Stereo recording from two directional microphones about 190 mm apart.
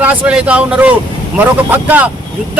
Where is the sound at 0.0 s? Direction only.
5° right (ahead or behind).